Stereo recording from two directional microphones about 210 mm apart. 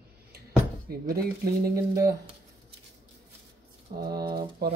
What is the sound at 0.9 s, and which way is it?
Speech, 45° right (ahead or behind).